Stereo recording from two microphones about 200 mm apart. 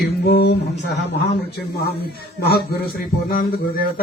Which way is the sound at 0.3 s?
55° left (ahead or behind).